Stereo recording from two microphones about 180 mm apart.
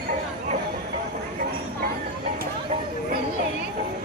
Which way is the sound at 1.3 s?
55° right (ahead or behind).